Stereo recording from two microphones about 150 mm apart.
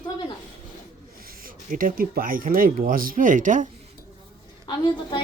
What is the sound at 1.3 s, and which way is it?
Speech, 70° right (ahead or behind).